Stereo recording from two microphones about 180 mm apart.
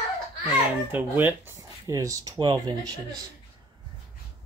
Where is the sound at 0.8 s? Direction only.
10° right (ahead or behind).